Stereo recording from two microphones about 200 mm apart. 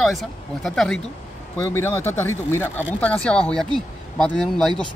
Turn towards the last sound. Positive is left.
turn(degrees=5)  # may be behind; listen again after turning